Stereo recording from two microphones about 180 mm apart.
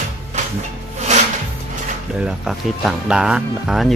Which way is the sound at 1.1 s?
40° right (ahead or behind).